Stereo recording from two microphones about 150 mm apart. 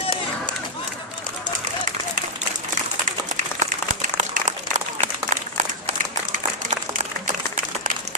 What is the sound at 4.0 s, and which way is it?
Applause, 55° right (ahead or behind).